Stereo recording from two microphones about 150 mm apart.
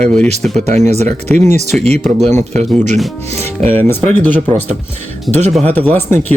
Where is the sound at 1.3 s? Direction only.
10° left (ahead or behind).